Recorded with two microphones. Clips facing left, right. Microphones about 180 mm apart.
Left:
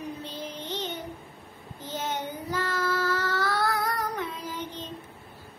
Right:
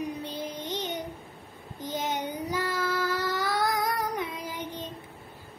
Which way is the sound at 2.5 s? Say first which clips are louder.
Left 2 dB; 15° right (ahead or behind).